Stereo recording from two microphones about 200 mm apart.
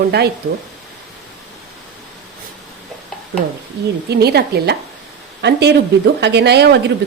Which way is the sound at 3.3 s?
55° right (ahead or behind).